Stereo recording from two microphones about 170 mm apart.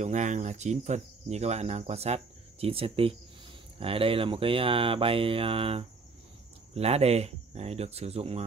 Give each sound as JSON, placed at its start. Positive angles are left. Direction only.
{"t": 0.0, "sound": "speech", "side_deg": -45}